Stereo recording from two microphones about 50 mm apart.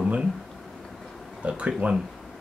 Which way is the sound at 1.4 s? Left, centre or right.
Right.